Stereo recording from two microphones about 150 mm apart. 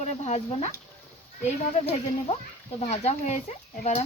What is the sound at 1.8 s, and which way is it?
Speech, 45° left (ahead or behind).